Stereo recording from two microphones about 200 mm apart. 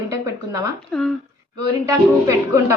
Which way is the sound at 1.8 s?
15° right (ahead or behind).